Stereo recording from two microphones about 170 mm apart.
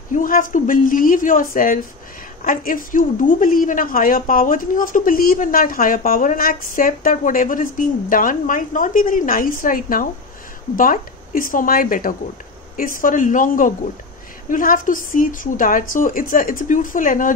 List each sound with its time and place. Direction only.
0.1 s a woman's voice: 50° left (ahead or behind)